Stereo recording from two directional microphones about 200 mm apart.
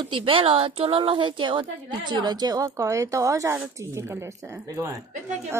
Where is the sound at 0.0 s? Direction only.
25° right (ahead or behind).